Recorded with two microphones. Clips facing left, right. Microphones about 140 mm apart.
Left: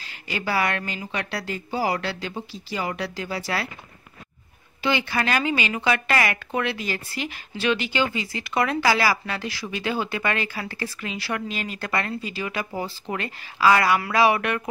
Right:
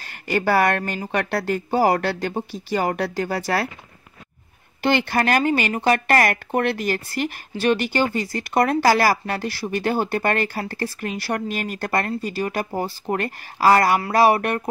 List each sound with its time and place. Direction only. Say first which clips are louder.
0.0 s a woman's voice: right 8 dB; 55° right (ahead or behind)
4.8 s a woman's voice: right 4 dB; 55° right (ahead or behind)